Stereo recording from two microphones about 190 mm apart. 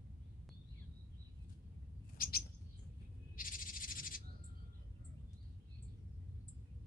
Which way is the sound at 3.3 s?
45° left (ahead or behind).